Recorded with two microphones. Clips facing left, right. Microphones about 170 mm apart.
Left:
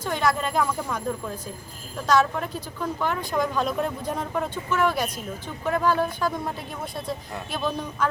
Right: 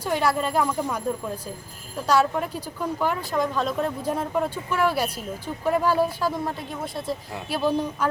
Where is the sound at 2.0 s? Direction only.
10° right (ahead or behind).